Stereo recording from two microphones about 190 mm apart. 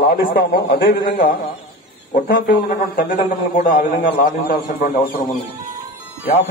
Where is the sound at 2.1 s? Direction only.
50° left (ahead or behind).